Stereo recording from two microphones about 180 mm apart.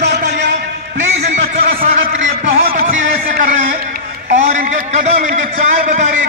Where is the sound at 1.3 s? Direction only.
50° right (ahead or behind).